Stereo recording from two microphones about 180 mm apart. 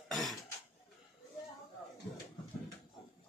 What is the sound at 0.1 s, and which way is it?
Cough, centre (ahead or behind).